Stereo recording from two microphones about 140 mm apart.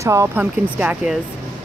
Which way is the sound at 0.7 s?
5° right (ahead or behind).